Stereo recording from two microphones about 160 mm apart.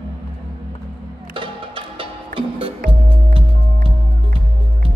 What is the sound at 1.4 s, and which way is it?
Music, 35° right (ahead or behind).